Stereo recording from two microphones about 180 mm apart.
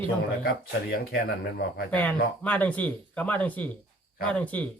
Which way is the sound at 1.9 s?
10° left (ahead or behind).